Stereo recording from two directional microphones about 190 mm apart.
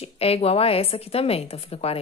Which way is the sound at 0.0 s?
30° left (ahead or behind).